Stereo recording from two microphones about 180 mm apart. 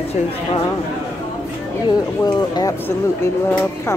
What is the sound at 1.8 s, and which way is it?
Speech, 20° left (ahead or behind).